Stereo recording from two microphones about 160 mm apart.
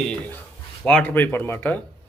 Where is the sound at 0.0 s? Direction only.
5° left (ahead or behind).